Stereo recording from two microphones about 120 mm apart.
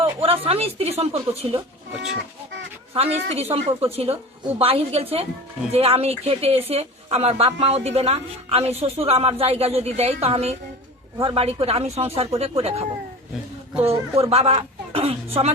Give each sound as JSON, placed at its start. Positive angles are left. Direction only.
{"t": 0.0, "sound": "speech", "side_deg": -55}
{"t": 2.9, "sound": "speech", "side_deg": -60}
{"t": 14.2, "sound": "speech", "side_deg": -55}